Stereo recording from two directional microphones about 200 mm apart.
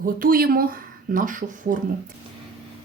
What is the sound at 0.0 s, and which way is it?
Speech, 45° right (ahead or behind).